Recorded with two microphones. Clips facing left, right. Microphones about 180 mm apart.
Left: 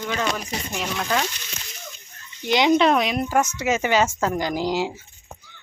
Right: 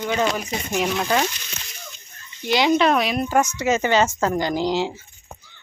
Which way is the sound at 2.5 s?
20° left (ahead or behind).